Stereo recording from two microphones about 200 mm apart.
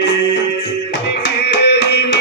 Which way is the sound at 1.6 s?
55° left (ahead or behind).